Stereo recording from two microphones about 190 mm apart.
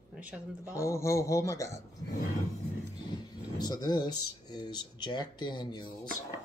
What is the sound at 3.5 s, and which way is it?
Speech, 20° left (ahead or behind).